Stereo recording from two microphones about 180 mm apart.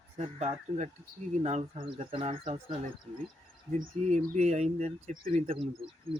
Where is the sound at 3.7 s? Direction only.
45° right (ahead or behind).